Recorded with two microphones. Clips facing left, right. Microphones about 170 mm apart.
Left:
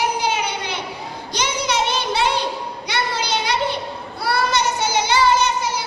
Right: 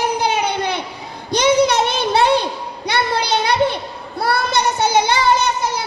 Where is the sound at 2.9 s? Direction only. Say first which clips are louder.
Right 5 dB; 55° right (ahead or behind).